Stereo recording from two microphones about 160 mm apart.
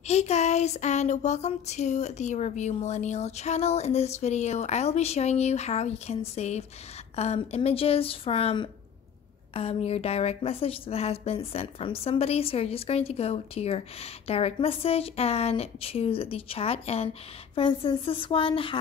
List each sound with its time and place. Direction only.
0.0 s a woman's voice: 45° left (ahead or behind)